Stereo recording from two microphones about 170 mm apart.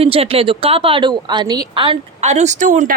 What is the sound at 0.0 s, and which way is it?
Speech, 35° right (ahead or behind).